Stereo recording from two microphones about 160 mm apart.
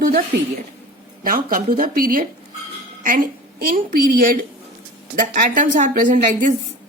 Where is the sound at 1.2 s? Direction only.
65° right (ahead or behind).